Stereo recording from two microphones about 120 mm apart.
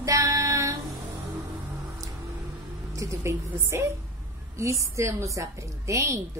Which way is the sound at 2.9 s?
25° right (ahead or behind).